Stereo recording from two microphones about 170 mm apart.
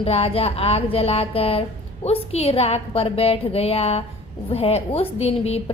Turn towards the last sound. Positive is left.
turn(degrees=35)  # may be behind; listen again after turning